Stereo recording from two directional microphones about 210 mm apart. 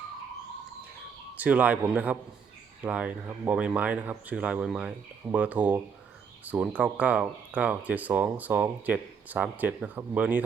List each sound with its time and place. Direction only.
1.4 s speech: 5° right (ahead or behind)